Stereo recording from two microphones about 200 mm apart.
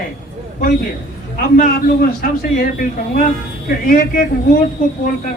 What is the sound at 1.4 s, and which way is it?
Speech, 45° left (ahead or behind).